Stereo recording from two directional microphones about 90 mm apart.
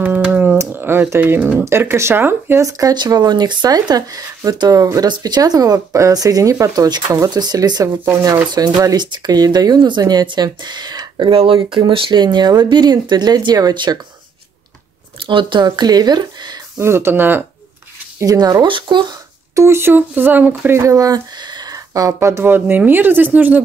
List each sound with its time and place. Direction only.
0.0 s a sound: 20° right (ahead or behind)
0.6 s speech: 25° right (ahead or behind)
2.6 s speech: 45° right (ahead or behind)
8.5 s speech: 50° right (ahead or behind); by 11.8 s 90° right
11.9 s speech: 65° right (ahead or behind); by 13.9 s 50° right (ahead or behind)
15.1 s speech: 65° right (ahead or behind)
16.7 s speech: 30° right (ahead or behind)
18.2 s speech: 45° right (ahead or behind)
18.7 s speech: 60° right (ahead or behind)
19.5 s speech: 30° right (ahead or behind)
20.8 s speech: 45° right (ahead or behind); by 23.6 s 20° right (ahead or behind)